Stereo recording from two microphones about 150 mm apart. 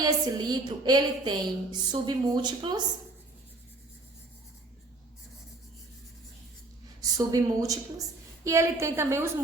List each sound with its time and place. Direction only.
0.0 s a woman's voice: 25° right (ahead or behind)
7.2 s a woman's voice: 25° right (ahead or behind)